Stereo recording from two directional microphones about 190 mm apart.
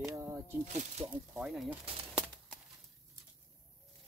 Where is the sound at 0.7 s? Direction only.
35° right (ahead or behind).